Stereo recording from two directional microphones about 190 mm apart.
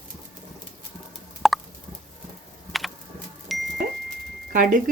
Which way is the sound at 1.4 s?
Centre (ahead or behind).